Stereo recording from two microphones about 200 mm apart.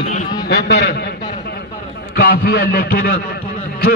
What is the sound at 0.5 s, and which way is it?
Speech, 60° left (ahead or behind).